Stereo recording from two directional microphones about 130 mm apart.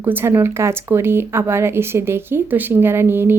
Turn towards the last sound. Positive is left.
turn(degrees=-15)  # may be behind; listen again after turning